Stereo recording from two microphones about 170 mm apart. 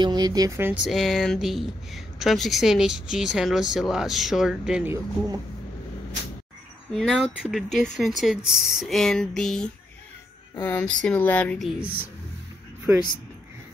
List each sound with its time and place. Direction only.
0.0 s speech: 25° right (ahead or behind)
0.8 s speech: centre (ahead or behind)
6.9 s speech: centre (ahead or behind)